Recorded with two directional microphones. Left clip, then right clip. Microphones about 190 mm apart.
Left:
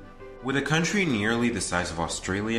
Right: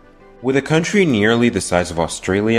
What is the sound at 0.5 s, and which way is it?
Speech, 35° right (ahead or behind).